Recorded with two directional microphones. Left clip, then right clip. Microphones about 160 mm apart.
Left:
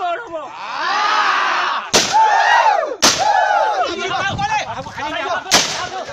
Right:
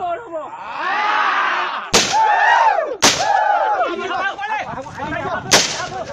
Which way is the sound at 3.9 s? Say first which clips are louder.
Left 1 dB; 40° left (ahead or behind).